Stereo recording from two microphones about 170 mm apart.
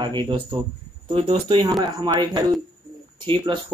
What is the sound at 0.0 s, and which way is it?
Speech, 25° right (ahead or behind).